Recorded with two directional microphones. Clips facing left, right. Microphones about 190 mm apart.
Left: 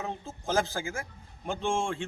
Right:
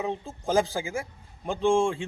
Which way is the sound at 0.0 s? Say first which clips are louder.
Right 5 dB; 15° right (ahead or behind).